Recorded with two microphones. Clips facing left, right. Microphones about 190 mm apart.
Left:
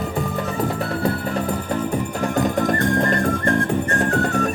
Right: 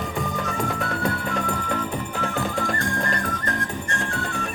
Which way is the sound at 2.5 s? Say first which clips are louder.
Left 7 dB; 45° left (ahead or behind).